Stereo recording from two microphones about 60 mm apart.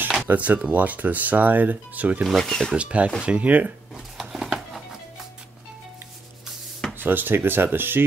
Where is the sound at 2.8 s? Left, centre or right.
Right.